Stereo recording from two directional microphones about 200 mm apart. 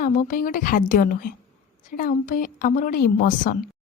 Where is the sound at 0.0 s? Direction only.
45° left (ahead or behind).